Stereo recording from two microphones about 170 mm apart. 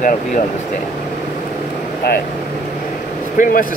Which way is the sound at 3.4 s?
55° left (ahead or behind).